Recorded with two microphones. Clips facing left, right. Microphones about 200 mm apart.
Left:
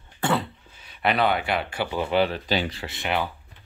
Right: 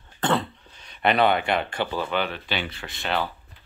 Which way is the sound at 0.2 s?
10° left (ahead or behind).